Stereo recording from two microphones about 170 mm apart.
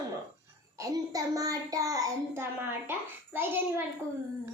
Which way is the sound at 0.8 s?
20° right (ahead or behind).